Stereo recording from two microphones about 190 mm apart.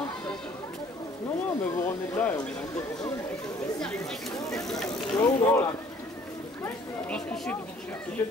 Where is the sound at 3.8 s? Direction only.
5° left (ahead or behind).